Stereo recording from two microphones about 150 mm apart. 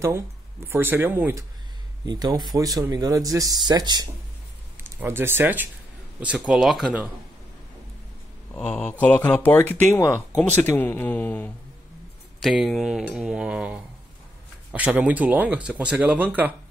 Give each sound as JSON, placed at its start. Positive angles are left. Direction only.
{"t": 0.7, "sound": "speech", "side_deg": -15}
{"t": 2.0, "sound": "speech", "side_deg": -30}
{"t": 4.7, "sound": "speech", "side_deg": -15}
{"t": 8.5, "sound": "cutlery", "side_deg": 5}
{"t": 9.0, "sound": "speech", "side_deg": 10}
{"t": 12.4, "sound": "cutlery", "side_deg": 0}
{"t": 14.7, "sound": "speech", "side_deg": -5}